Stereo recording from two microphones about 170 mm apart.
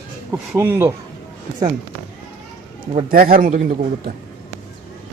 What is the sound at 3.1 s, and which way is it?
A man's voice, 60° right (ahead or behind).